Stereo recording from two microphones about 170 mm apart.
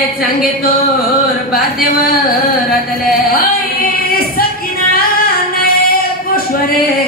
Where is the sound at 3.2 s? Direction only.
60° left (ahead or behind).